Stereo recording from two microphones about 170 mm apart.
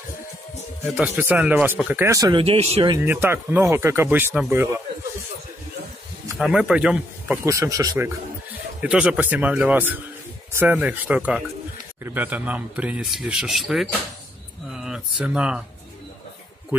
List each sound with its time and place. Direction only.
0.8 s speech: 5° right (ahead or behind); by 2.4 s 20° right (ahead or behind)
2.4 s speech: 35° right (ahead or behind)
3.1 s speech: 10° right (ahead or behind)
6.3 s speech: 5° right (ahead or behind)
7.4 s speech: 20° right (ahead or behind)
8.8 s speech: 5° right (ahead or behind)
14.7 s a sound: 5° right (ahead or behind)